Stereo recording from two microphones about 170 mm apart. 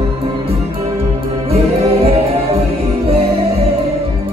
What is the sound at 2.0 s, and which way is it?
Music, 35° right (ahead or behind).